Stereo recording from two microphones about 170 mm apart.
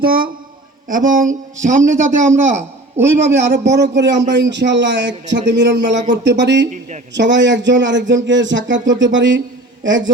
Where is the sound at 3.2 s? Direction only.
90° right.